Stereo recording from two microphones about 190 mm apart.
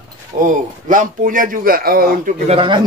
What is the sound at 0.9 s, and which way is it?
Speech, 45° right (ahead or behind).